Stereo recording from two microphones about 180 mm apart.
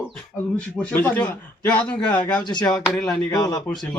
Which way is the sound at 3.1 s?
20° left (ahead or behind).